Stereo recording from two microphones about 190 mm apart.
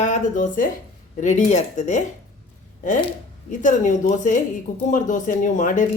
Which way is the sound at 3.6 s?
40° left (ahead or behind).